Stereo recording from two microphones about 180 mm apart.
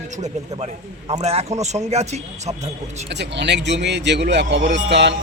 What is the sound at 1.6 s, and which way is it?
Speech, 40° right (ahead or behind).